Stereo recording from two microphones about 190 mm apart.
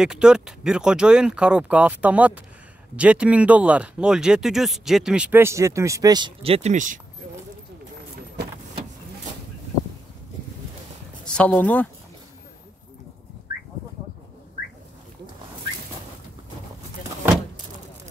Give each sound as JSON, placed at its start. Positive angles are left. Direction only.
{"t": 0.0, "sound": "speech", "side_deg": -5}
{"t": 11.2, "sound": "speech", "side_deg": 5}
{"t": 13.5, "sound": "a sound", "side_deg": -20}